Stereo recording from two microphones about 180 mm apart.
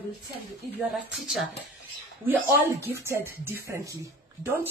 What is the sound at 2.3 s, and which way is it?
Speech, 15° right (ahead or behind).